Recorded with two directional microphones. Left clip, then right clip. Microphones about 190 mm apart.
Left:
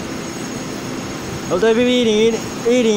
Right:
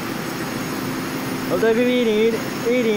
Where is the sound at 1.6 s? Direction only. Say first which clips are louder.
Left 3 dB; 20° left (ahead or behind).